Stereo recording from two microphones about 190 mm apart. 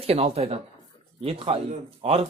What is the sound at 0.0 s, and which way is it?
Speech, 30° right (ahead or behind).